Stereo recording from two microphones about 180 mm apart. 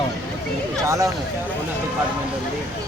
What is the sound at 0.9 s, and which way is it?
Speech, 20° right (ahead or behind).